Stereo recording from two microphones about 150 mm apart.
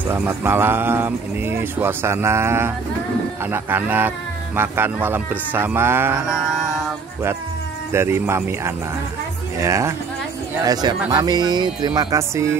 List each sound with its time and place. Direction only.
0.1 s speech: 15° right (ahead or behind)
7.9 s speech: 15° right (ahead or behind)